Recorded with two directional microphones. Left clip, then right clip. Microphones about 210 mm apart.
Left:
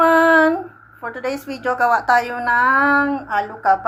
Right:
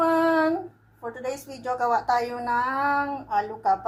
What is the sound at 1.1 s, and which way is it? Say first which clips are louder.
A woman's voice: left 8 dB; 15° left (ahead or behind).